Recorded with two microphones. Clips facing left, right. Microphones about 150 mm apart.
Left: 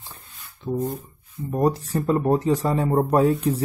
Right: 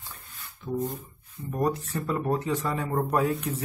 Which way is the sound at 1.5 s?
30° left (ahead or behind).